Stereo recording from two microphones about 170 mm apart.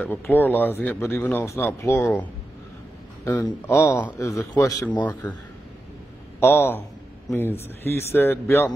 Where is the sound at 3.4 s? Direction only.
15° left (ahead or behind).